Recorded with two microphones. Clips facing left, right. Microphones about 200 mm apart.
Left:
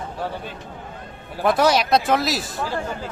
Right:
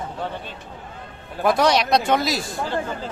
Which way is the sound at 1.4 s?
Centre (ahead or behind).